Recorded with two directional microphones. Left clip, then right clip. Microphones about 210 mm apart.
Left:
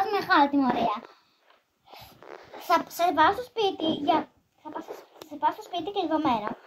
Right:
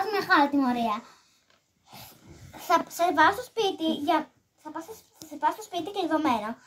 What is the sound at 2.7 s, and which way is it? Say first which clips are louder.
A child's voice: even; 15° right (ahead or behind).